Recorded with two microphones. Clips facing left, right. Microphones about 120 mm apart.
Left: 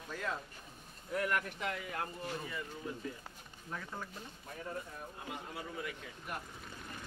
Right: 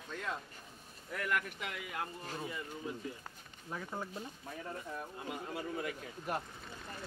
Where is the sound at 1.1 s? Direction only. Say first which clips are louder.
Left 2 dB; 30° left (ahead or behind).